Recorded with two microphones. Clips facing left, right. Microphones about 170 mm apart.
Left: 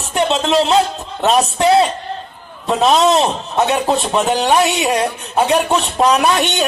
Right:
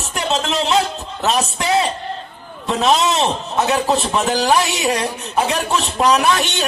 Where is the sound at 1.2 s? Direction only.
35° left (ahead or behind).